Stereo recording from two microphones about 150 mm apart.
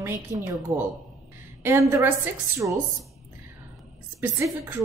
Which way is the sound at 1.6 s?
15° right (ahead or behind).